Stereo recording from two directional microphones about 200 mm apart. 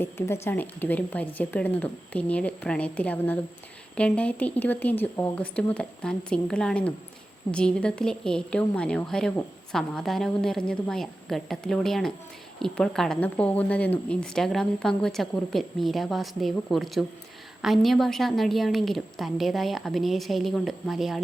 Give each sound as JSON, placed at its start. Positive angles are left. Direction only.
{"t": 0.0, "sound": "speech", "side_deg": 10}